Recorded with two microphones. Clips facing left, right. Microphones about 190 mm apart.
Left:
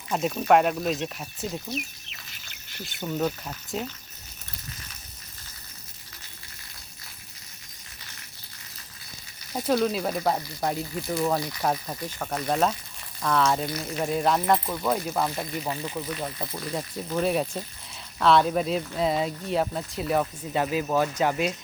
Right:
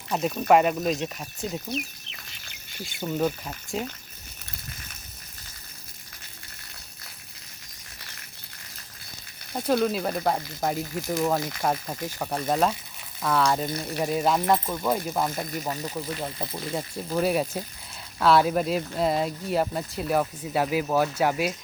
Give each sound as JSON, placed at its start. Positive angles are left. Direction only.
{"t": 0.1, "sound": "speech", "side_deg": 0}
{"t": 1.7, "sound": "bird", "side_deg": 55}
{"t": 3.0, "sound": "speech", "side_deg": -10}
{"t": 9.5, "sound": "speech", "side_deg": 0}
{"t": 13.7, "sound": "speech", "side_deg": -30}
{"t": 13.9, "sound": "speech", "side_deg": -5}